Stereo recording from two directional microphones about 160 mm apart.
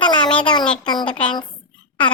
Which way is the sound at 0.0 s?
30° left (ahead or behind).